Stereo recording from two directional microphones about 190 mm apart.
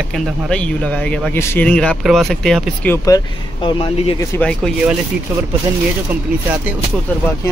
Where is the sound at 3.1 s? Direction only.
25° left (ahead or behind).